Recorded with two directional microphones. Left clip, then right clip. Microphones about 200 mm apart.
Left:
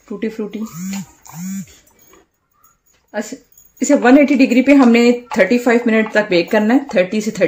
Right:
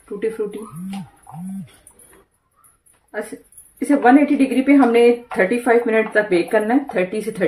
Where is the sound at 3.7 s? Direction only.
45° left (ahead or behind).